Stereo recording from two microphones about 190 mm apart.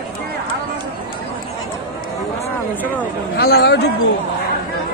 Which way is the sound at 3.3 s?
55° left (ahead or behind).